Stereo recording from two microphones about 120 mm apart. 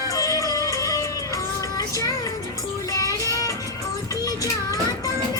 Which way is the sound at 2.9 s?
30° left (ahead or behind).